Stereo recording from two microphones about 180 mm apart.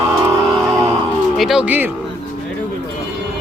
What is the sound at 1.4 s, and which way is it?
Speech, centre (ahead or behind).